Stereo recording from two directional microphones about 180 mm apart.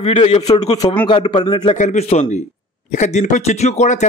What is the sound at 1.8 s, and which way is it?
A man's voice, 40° left (ahead or behind).